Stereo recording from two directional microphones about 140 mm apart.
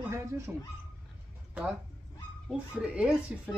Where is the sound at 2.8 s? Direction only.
10° right (ahead or behind).